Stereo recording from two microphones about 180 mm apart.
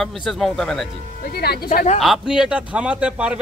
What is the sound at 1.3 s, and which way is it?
Speech, 60° left (ahead or behind).